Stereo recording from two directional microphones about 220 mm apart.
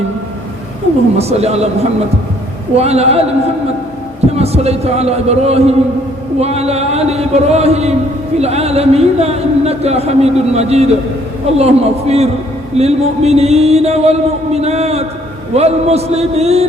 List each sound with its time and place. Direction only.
1.2 s speech: 30° right (ahead or behind)
4.4 s speech: 30° right (ahead or behind)